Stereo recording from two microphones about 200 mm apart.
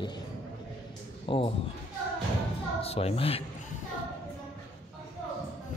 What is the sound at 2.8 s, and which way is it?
Speech, 30° left (ahead or behind).